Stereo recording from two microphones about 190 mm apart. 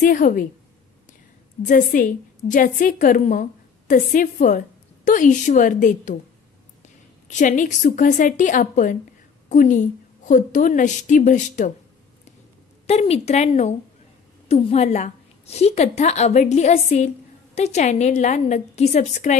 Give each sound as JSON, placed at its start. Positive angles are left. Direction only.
{"t": 0.0, "sound": "a woman's voice", "side_deg": 45}
{"t": 1.6, "sound": "a woman's voice", "side_deg": 40}
{"t": 7.2, "sound": "a woman's voice", "side_deg": 40}
{"t": 12.8, "sound": "a woman's voice", "side_deg": 35}